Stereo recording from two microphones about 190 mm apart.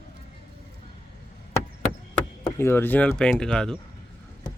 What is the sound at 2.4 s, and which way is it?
Speech, 15° left (ahead or behind).